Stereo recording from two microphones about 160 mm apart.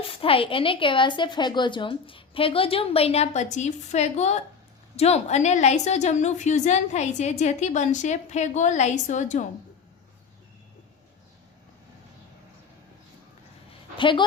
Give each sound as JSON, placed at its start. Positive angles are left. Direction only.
{"t": 0.1, "sound": "a woman's voice", "side_deg": 35}
{"t": 13.9, "sound": "speech", "side_deg": 30}